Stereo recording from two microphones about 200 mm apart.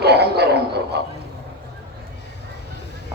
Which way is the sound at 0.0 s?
55° right (ahead or behind).